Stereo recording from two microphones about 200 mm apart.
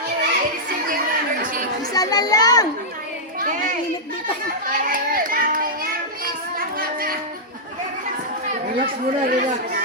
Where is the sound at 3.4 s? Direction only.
40° right (ahead or behind).